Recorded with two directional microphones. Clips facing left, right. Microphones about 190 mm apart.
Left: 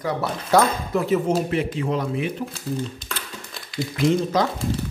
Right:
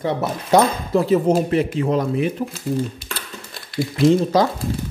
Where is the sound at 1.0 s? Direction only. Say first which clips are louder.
Right 4 dB; 35° right (ahead or behind).